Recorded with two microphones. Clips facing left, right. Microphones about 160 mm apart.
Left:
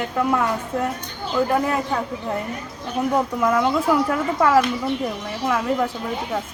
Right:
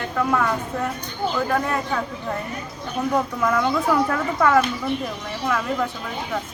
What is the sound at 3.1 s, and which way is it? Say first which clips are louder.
Speech: left 2 dB; 15° left (ahead or behind).